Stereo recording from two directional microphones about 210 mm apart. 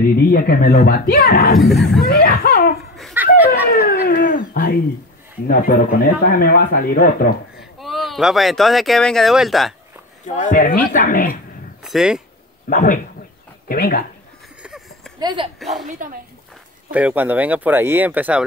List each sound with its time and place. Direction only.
0.2 s speech: 45° left (ahead or behind)
1.6 s speech: centre (ahead or behind)
2.0 s speech: 45° left (ahead or behind)
3.0 s chuckle: centre (ahead or behind)
3.4 s dog: 45° left (ahead or behind)
5.5 s speech: 45° left (ahead or behind)
7.8 s speech: centre (ahead or behind)
10.2 s speech: 35° left (ahead or behind)
11.8 s speech: centre (ahead or behind)
12.6 s speech: 40° left (ahead or behind)
14.6 s a sound: 5° right (ahead or behind)
15.1 s a woman's voice: 20° right (ahead or behind)
15.9 s speech: 40° right (ahead or behind)
16.9 s speech: 10° right (ahead or behind)